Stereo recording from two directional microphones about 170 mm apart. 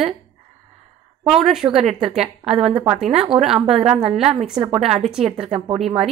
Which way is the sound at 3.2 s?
35° right (ahead or behind).